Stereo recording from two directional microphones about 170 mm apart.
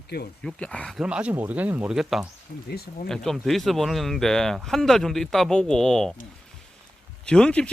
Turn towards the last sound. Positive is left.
turn(degrees=5)  # may be behind; listen again after turning